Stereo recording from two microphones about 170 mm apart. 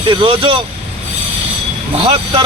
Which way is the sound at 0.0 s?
30° right (ahead or behind).